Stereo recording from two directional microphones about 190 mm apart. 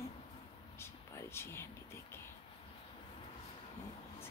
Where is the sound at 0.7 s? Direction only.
15° left (ahead or behind).